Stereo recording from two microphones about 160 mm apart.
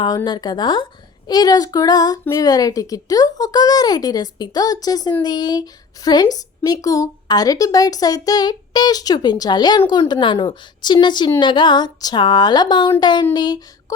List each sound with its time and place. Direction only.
0.3 s a woman's voice: 25° left (ahead or behind)